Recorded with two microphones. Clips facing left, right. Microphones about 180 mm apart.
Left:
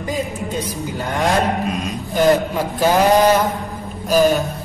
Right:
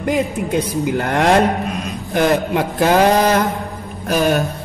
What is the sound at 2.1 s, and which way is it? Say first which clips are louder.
Speech: even; 90° right.